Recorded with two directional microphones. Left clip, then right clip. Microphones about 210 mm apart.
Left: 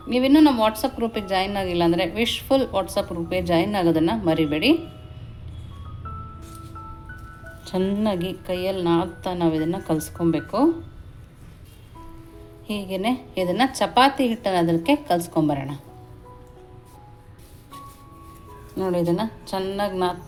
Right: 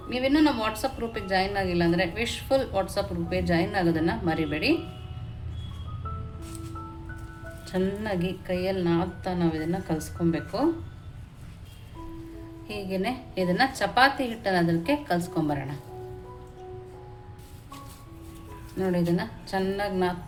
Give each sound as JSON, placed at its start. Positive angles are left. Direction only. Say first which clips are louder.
{"t": 0.1, "sound": "a woman's voice", "louder": "left 6 dB", "side_deg": 35}
{"t": 7.7, "sound": "a woman's voice", "louder": "left 5 dB", "side_deg": 30}
{"t": 12.6, "sound": "a woman's voice", "louder": "left 5 dB", "side_deg": 35}
{"t": 18.8, "sound": "a woman's voice", "louder": "left 5 dB", "side_deg": 30}